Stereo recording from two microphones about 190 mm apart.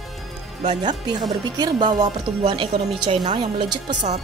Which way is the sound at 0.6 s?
20° right (ahead or behind).